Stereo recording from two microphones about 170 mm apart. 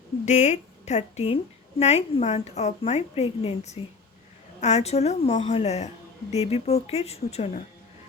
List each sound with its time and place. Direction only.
0.3 s a woman's voice: 45° left (ahead or behind)